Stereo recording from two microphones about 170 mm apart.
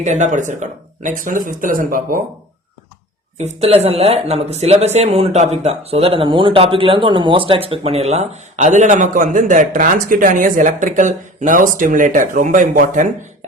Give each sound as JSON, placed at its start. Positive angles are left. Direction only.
{"t": 0.0, "sound": "speech", "side_deg": -45}
{"t": 3.3, "sound": "speech", "side_deg": -40}